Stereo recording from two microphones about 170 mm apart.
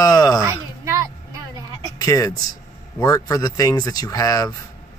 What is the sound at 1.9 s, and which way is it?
Speech, 20° left (ahead or behind).